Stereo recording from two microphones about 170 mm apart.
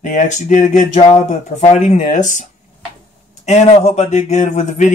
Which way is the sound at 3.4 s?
40° left (ahead or behind).